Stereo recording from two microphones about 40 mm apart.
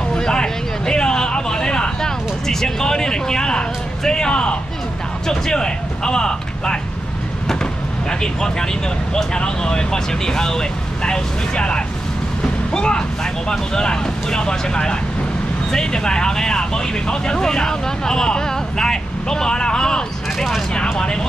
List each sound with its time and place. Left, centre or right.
0.1 s a sound: centre
5.2 s speech: centre
8.1 s speech: centre